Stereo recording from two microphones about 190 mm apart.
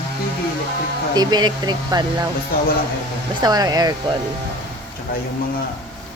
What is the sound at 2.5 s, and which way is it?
Speech, 50° left (ahead or behind).